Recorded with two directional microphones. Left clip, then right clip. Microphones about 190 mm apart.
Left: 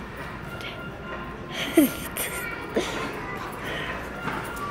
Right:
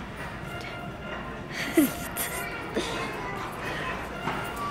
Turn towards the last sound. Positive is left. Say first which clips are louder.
# left 3 dB
turn(degrees=0)  # may be behind; listen again after turning